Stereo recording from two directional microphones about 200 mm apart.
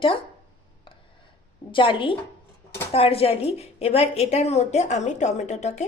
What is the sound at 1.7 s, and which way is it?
A woman's voice, 25° left (ahead or behind).